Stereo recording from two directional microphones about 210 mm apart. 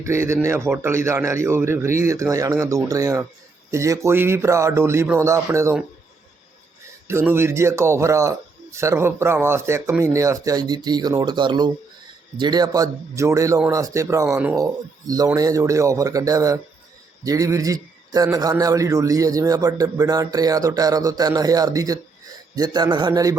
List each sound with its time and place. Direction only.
0.0 s a man's voice: 15° right (ahead or behind)
7.1 s a man's voice: 10° right (ahead or behind)